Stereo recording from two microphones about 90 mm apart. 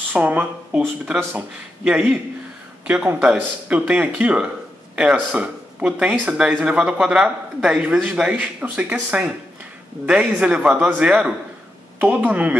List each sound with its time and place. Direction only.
0.1 s speech: 20° right (ahead or behind)
10.0 s speech: 15° right (ahead or behind)